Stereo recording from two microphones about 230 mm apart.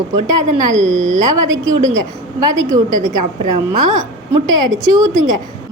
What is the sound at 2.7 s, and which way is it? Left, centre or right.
Speech, centre.